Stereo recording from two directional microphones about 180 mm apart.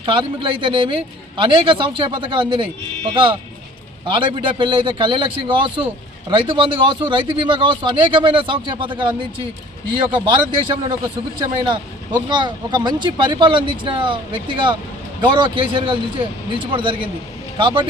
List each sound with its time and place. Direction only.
0.0 s speech: 30° right (ahead or behind)